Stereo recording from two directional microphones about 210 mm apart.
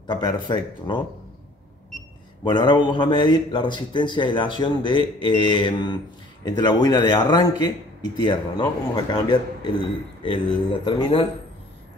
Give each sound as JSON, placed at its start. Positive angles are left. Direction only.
{"t": 0.0, "sound": "a man's voice", "side_deg": 20}
{"t": 2.4, "sound": "a man's voice", "side_deg": 20}